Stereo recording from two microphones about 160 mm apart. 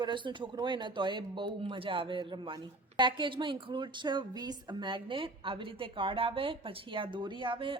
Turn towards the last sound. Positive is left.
turn(degrees=-35)  # may be behind; listen again after turning